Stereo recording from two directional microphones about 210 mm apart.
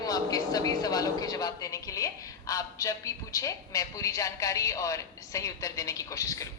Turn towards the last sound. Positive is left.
turn(degrees=15)  # may be behind; listen again after turning